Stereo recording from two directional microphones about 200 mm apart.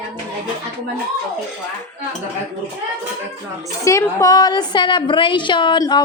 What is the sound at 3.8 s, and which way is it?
A woman's voice, 15° left (ahead or behind).